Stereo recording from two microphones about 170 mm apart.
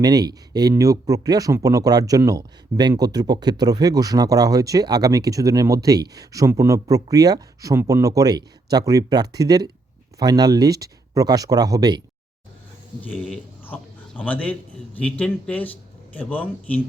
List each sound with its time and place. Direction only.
0.0 s speech: 20° right (ahead or behind)
13.0 s a man's voice: 10° left (ahead or behind)